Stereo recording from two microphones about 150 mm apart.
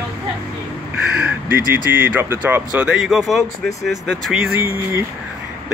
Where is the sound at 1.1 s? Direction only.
10° right (ahead or behind).